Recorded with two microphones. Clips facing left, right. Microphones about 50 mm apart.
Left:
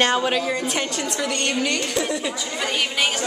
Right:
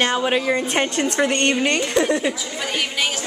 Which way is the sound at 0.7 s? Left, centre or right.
Right.